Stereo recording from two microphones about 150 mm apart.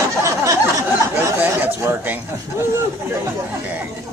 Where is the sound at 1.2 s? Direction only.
15° right (ahead or behind).